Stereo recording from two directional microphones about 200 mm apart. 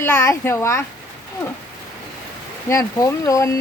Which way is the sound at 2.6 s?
15° left (ahead or behind).